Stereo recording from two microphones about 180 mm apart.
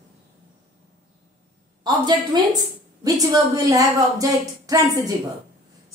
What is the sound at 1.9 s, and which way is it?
A woman's voice, 25° right (ahead or behind).